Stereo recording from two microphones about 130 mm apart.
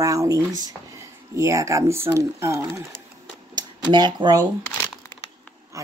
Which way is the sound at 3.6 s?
35° right (ahead or behind).